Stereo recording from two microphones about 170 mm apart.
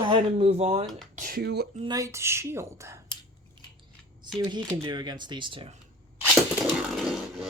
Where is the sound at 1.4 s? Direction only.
75° right (ahead or behind).